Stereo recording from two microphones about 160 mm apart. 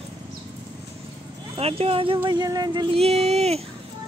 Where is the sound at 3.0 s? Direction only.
40° right (ahead or behind).